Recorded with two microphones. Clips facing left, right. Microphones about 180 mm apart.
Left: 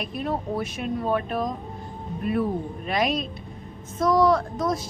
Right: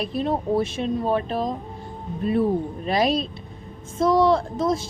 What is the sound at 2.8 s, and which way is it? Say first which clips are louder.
A woman's voice: right 3 dB; 30° right (ahead or behind).